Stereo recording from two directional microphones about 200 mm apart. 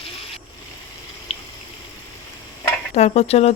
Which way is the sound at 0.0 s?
30° left (ahead or behind).